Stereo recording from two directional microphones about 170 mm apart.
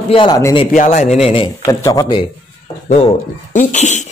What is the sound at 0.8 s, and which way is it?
A man's voice, 45° left (ahead or behind).